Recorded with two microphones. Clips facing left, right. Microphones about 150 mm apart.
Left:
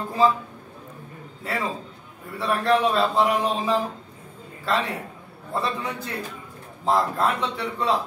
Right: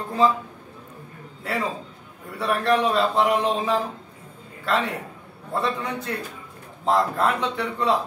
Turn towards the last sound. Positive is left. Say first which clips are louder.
# right 2 dB
turn(degrees=0)  # may be behind; listen again after turning